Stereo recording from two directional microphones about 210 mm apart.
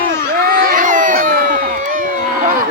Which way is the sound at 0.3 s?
45° right (ahead or behind).